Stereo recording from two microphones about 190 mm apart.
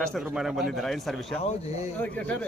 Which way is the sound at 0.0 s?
Centre (ahead or behind).